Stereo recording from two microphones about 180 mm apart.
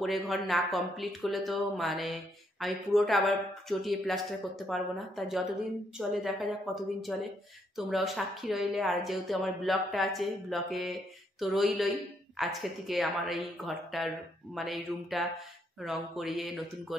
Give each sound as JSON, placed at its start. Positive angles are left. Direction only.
{"t": 0.3, "sound": "a woman's voice", "side_deg": 0}